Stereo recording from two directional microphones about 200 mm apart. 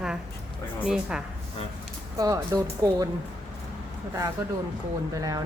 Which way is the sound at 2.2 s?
15° right (ahead or behind).